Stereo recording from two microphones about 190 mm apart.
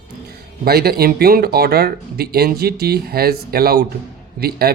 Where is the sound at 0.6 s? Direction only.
55° right (ahead or behind).